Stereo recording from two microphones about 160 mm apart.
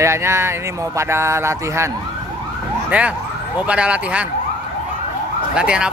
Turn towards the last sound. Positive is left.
turn(degrees=-5)  # may be behind; listen again after turning